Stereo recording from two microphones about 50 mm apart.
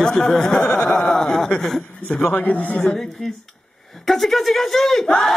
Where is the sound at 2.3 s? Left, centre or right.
Left.